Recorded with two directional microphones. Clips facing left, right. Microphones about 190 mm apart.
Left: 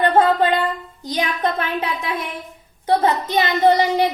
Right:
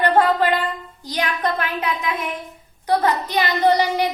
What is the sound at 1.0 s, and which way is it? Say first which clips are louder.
A woman's voice: left 1 dB; 20° left (ahead or behind).